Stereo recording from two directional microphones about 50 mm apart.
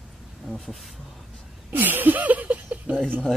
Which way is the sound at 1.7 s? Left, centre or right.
Right.